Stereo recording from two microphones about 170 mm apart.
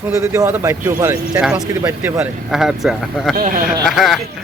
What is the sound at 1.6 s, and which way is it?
A man's voice, 15° right (ahead or behind).